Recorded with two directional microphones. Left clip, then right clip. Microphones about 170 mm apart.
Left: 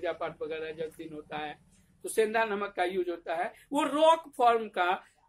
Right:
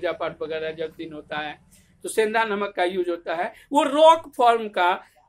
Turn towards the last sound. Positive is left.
turn(degrees=-20)  # may be behind; listen again after turning